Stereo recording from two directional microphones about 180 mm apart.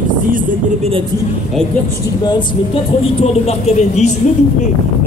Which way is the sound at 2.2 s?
30° left (ahead or behind).